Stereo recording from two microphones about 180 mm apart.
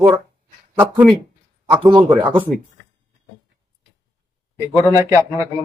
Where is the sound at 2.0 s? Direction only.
10° right (ahead or behind).